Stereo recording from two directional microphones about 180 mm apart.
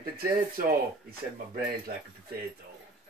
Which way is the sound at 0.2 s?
55° right (ahead or behind).